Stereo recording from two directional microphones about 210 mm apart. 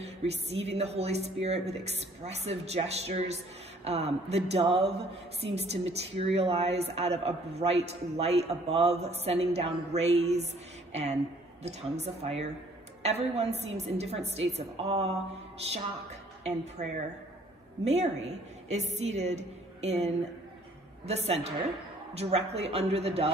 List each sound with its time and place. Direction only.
0.0 s a woman's voice: 30° right (ahead or behind)
16.4 s a woman's voice: 35° right (ahead or behind)